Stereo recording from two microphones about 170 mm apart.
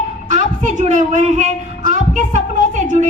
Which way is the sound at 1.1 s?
45° right (ahead or behind).